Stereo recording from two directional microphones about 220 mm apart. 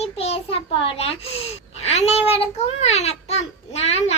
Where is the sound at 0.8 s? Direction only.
25° left (ahead or behind).